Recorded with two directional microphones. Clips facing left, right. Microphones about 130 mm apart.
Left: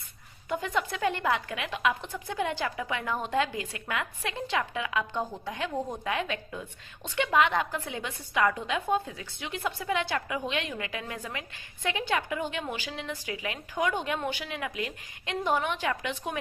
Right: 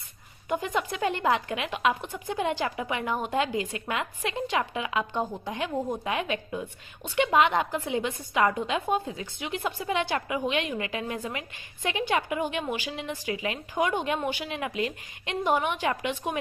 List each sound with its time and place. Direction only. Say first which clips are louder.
0.4 s a woman's voice: right 2 dB; 15° right (ahead or behind)